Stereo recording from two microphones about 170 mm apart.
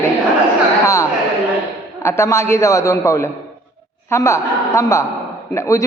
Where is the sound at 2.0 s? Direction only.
15° left (ahead or behind).